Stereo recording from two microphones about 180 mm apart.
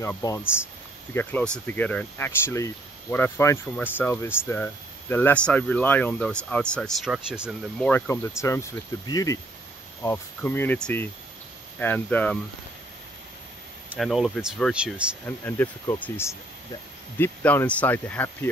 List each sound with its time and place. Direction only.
0.2 s speech: 20° left (ahead or behind)
1.1 s speech: 10° left (ahead or behind)
7.8 s speech: 15° left (ahead or behind)
13.8 s speech: centre (ahead or behind)
15.2 s speech: 10° left (ahead or behind)